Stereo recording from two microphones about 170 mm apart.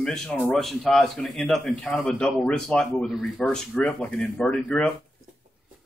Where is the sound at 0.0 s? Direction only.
5° left (ahead or behind).